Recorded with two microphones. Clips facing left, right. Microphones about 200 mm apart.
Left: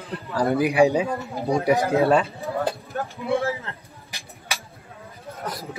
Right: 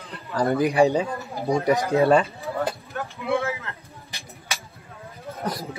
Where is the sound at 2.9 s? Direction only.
35° left (ahead or behind).